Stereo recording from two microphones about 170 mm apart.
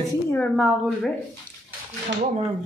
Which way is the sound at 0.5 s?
5° right (ahead or behind).